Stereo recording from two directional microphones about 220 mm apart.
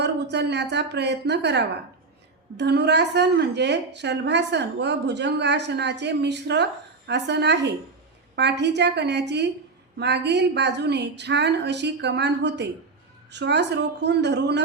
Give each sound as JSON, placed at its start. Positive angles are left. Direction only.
{"t": 0.0, "sound": "a woman's voice", "side_deg": -50}